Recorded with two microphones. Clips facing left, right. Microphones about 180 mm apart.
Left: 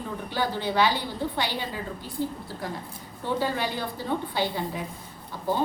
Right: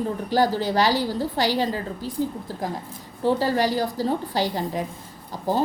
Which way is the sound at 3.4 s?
40° right (ahead or behind).